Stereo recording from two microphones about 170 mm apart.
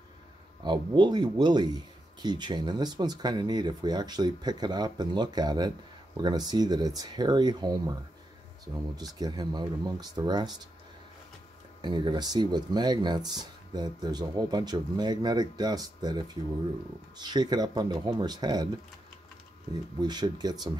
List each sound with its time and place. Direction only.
0.7 s speech: 25° right (ahead or behind)
9.2 s speech: 25° right (ahead or behind)
11.8 s speech: 25° right (ahead or behind)
17.2 s speech: 25° right (ahead or behind)
19.7 s speech: 25° right (ahead or behind)